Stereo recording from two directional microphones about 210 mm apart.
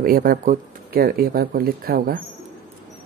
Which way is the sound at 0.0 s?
45° right (ahead or behind).